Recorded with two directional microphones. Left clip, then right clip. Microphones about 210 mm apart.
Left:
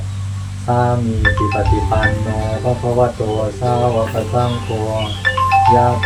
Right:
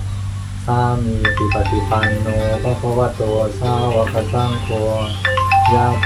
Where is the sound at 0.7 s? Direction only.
10° left (ahead or behind).